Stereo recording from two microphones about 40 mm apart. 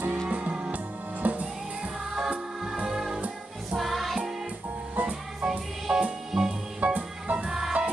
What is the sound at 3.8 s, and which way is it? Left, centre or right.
Music, centre.